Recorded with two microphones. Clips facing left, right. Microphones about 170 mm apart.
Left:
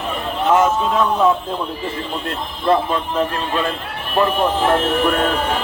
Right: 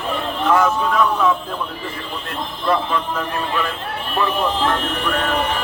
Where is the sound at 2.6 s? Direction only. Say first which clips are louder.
Left 3 dB; 25° left (ahead or behind).